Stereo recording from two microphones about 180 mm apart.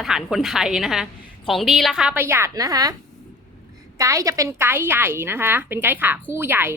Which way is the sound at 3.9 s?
20° right (ahead or behind).